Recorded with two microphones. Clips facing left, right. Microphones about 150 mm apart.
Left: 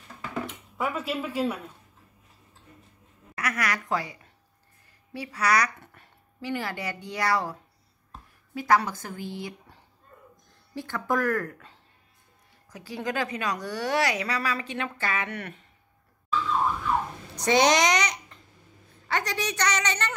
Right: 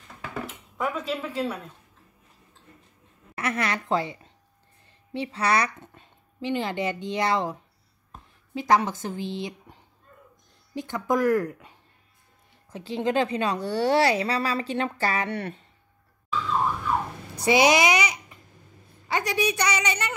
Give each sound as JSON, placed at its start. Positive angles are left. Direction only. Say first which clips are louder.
{"t": 0.3, "sound": "a sound", "louder": "left 2 dB", "side_deg": 0}
{"t": 3.3, "sound": "a woman's voice", "louder": "right 2 dB", "side_deg": -25}
{"t": 8.5, "sound": "a woman's voice", "louder": "right 1 dB", "side_deg": -20}
{"t": 17.4, "sound": "a child's voice", "louder": "right 2 dB", "side_deg": -10}